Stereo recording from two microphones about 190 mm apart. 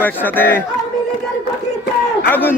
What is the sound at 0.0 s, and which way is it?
Speech, 10° left (ahead or behind).